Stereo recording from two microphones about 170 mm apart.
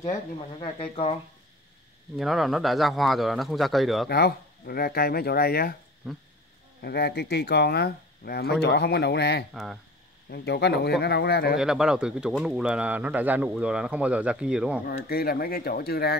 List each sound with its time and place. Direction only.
0.1 s speech: 35° left (ahead or behind)
2.1 s speech: centre (ahead or behind)
4.1 s speech: 65° left (ahead or behind)
6.8 s speech: 70° left (ahead or behind)
9.5 s speech: centre (ahead or behind)
10.3 s speech: 75° left (ahead or behind)
11.5 s speech: 5° right (ahead or behind)
14.9 s speech: 65° left (ahead or behind)